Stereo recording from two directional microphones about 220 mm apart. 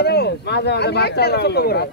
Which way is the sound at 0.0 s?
50° left (ahead or behind).